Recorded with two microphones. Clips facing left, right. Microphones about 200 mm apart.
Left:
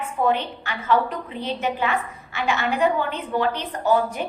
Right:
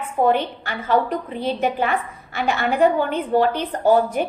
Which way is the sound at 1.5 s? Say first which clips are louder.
Right 2 dB; 55° right (ahead or behind).